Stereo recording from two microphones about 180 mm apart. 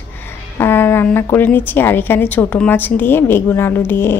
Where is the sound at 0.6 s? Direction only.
10° left (ahead or behind).